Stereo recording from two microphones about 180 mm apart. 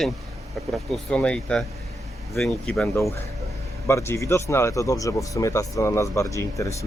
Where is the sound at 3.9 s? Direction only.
15° left (ahead or behind).